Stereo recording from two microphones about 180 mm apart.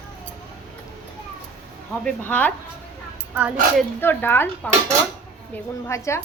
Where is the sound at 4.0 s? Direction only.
10° left (ahead or behind).